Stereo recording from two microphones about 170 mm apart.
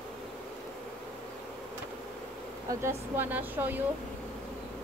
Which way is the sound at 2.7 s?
15° right (ahead or behind).